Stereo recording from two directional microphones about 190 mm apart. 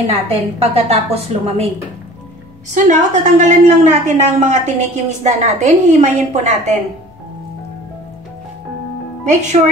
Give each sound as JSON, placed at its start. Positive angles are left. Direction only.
{"t": 0.0, "sound": "a woman's voice", "side_deg": -30}
{"t": 2.7, "sound": "a woman's voice", "side_deg": -40}
{"t": 9.3, "sound": "a woman's voice", "side_deg": -40}